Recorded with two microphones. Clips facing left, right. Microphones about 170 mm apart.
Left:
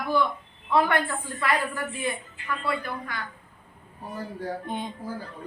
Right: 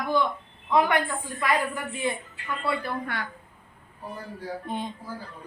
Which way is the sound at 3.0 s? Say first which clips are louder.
Right 3 dB; 65° right (ahead or behind).